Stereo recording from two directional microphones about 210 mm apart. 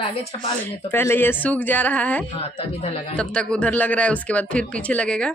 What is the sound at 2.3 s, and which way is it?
Speech, 30° left (ahead or behind).